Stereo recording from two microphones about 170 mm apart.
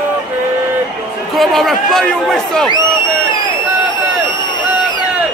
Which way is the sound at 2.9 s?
25° left (ahead or behind).